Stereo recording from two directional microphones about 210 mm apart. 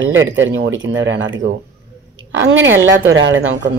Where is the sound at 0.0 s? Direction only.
65° right (ahead or behind).